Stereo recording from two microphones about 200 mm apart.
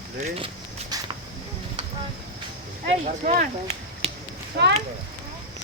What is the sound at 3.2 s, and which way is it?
Speech, 35° right (ahead or behind).